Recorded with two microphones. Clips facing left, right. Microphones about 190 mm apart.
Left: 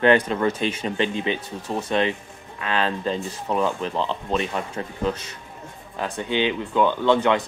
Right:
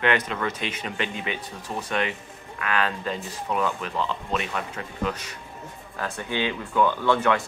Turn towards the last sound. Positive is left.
turn(degrees=20)  # may be behind; listen again after turning